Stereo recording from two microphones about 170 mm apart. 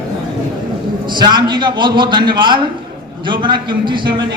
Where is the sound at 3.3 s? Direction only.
30° right (ahead or behind).